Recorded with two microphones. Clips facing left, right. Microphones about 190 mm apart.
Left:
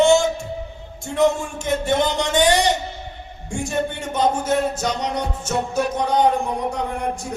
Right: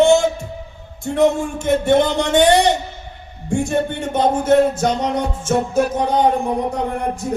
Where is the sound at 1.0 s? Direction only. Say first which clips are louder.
Right 3 dB; 55° right (ahead or behind).